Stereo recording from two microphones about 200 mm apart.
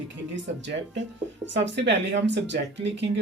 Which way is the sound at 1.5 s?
60° right (ahead or behind).